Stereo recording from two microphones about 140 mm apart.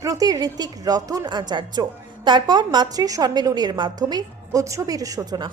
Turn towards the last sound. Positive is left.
turn(degrees=-25)  # may be behind; listen again after turning